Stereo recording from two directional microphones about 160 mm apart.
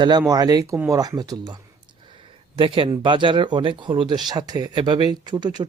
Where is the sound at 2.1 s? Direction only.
35° right (ahead or behind).